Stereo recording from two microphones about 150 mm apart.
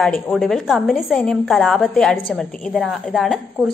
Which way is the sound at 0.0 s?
Centre (ahead or behind).